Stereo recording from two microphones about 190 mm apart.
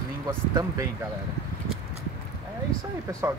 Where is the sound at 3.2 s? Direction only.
15° right (ahead or behind).